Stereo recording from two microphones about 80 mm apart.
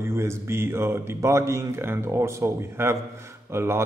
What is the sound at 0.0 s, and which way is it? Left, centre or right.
A man's voice, right.